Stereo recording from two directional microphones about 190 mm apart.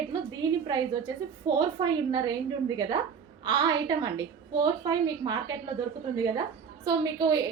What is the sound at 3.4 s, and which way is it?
A woman's voice, 20° right (ahead or behind).